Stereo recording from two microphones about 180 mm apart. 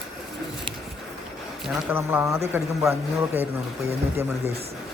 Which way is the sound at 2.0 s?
15° right (ahead or behind).